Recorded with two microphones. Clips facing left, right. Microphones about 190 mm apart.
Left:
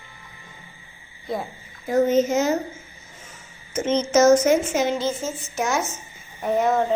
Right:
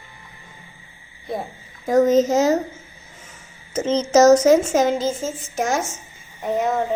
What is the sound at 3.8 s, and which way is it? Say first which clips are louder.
A woman's voice: right 3 dB; 35° right (ahead or behind).